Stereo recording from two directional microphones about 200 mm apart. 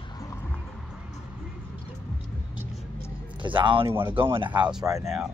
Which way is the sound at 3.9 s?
10° right (ahead or behind).